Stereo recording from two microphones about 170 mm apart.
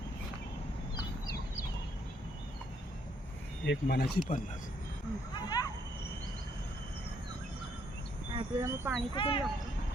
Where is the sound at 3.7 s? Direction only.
75° left (ahead or behind).